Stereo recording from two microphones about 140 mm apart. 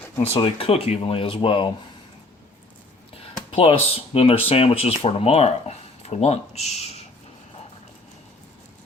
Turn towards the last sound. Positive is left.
turn(degrees=50)  # may be behind; listen again after turning